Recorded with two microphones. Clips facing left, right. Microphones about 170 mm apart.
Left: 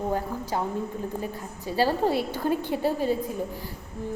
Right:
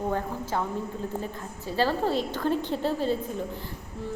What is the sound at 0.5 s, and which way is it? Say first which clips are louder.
A woman's voice: left 1 dB; 15° left (ahead or behind).